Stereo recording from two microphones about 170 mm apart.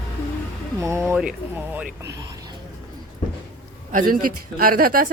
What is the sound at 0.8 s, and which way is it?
Speech, 15° right (ahead or behind).